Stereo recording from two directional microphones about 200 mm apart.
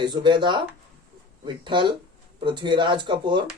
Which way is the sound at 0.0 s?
20° right (ahead or behind).